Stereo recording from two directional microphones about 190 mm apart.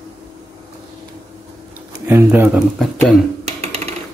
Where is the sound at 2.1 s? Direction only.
10° right (ahead or behind).